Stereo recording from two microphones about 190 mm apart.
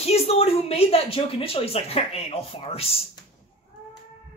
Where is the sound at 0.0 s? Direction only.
35° left (ahead or behind).